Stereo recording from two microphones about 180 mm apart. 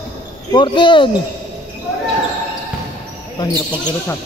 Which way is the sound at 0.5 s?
25° left (ahead or behind).